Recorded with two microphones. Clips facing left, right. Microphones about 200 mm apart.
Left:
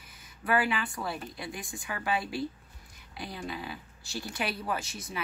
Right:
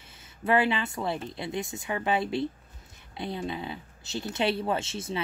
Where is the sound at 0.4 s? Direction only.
25° right (ahead or behind).